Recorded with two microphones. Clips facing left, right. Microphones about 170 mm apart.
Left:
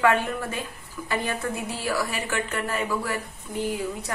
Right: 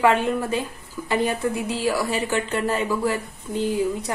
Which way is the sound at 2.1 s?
25° right (ahead or behind).